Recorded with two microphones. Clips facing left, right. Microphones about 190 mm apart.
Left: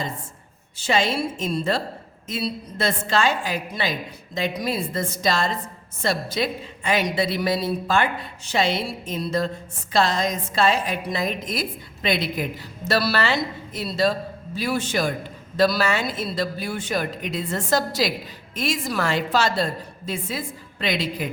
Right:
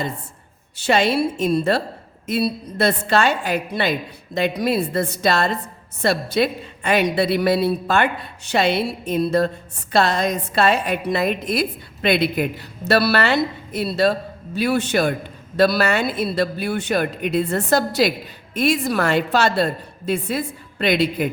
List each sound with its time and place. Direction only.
0.8 s a woman's voice: 65° right (ahead or behind)